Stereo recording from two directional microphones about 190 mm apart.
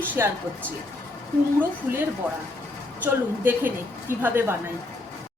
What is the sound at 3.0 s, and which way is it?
A woman's voice, 10° right (ahead or behind).